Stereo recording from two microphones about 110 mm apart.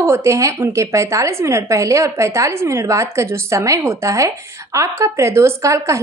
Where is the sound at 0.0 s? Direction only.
25° right (ahead or behind).